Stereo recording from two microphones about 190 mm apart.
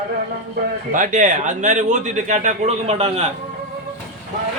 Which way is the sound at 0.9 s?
40° right (ahead or behind).